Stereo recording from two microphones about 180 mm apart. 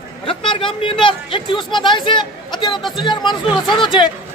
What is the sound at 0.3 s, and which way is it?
A man's voice, 30° left (ahead or behind).